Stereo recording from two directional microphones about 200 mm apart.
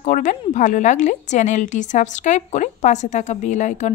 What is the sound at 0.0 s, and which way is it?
A woman's voice, 40° left (ahead or behind).